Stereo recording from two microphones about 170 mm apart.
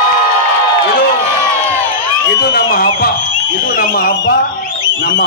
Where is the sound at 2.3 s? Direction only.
60° left (ahead or behind).